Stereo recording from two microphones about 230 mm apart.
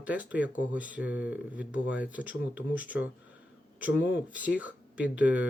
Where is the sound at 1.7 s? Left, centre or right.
Left.